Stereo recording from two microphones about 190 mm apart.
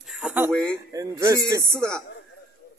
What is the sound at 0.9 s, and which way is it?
Speech, 20° right (ahead or behind).